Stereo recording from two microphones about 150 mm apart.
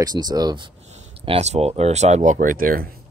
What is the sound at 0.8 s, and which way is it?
Speech, 45° right (ahead or behind).